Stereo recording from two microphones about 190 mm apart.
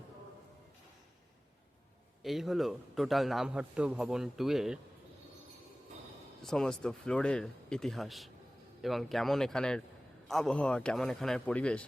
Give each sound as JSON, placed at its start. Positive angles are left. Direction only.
{"t": 2.2, "sound": "a man's voice", "side_deg": 0}
{"t": 6.4, "sound": "a man's voice", "side_deg": 5}